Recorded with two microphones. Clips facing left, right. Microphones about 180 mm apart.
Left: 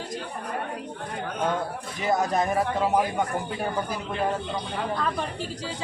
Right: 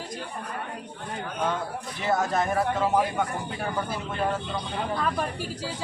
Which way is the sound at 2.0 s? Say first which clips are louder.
Left 1 dB; 15° left (ahead or behind).